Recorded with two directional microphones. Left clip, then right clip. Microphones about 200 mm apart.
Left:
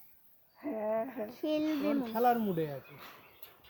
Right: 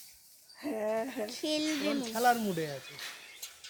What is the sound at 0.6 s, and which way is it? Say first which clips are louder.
Speech: right 1 dB; 65° right (ahead or behind).